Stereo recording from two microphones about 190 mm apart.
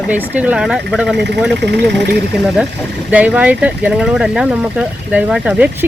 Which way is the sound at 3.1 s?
10° right (ahead or behind).